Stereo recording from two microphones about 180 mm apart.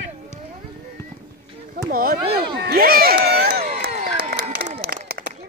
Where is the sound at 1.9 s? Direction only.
55° right (ahead or behind).